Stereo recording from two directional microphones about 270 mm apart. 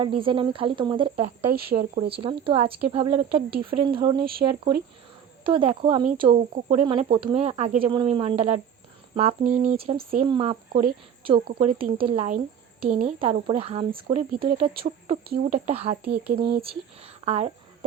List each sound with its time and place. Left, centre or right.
0.0 s speech: centre
1.5 s speech: right
2.0 s speech: centre
4.2 s speech: right
5.4 s speech: centre
10.7 s speech: right
11.2 s speech: centre
11.4 s speech: right
11.8 s speech: centre
15.2 s speech: right
16.0 s speech: right
16.3 s speech: centre